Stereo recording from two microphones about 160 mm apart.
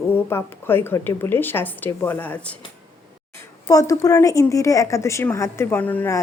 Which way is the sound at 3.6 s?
20° left (ahead or behind).